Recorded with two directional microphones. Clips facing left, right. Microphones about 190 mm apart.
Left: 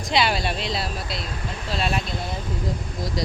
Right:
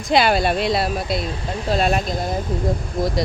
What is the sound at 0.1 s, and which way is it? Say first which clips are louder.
Speech: right 6 dB; 50° right (ahead or behind).